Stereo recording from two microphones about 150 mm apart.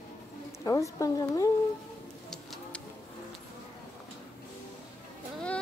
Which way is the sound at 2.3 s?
Centre (ahead or behind).